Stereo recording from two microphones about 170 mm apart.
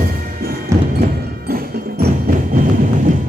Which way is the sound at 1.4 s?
65° right (ahead or behind).